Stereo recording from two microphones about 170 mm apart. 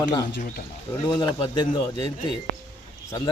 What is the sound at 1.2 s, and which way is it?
Speech, 25° left (ahead or behind).